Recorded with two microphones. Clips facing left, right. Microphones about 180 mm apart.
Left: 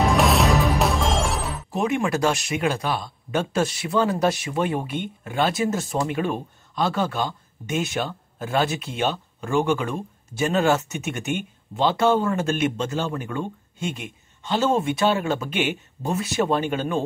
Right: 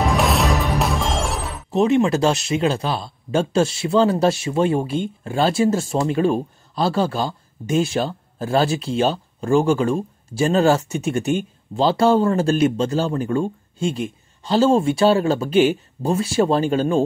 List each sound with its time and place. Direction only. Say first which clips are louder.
0.0 s music: even; centre (ahead or behind)
1.7 s speech: right 7 dB; 25° right (ahead or behind)